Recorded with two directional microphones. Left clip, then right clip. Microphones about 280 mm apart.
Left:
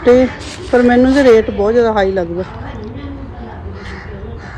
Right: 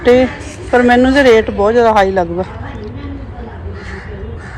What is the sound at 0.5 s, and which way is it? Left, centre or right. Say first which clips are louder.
Speech: right 1 dB; centre.